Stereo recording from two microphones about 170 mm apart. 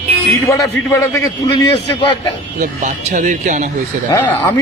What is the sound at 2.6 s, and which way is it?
Speech, 50° right (ahead or behind).